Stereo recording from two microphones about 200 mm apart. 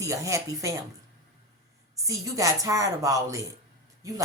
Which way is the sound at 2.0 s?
15° right (ahead or behind).